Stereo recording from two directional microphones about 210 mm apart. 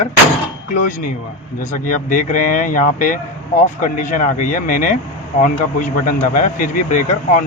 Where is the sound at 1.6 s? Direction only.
40° left (ahead or behind).